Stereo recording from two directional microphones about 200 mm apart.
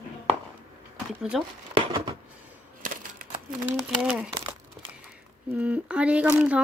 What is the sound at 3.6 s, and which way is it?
Speech, 5° right (ahead or behind).